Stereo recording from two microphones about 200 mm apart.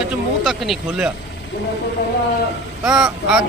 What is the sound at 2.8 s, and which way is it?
Speech, 5° right (ahead or behind).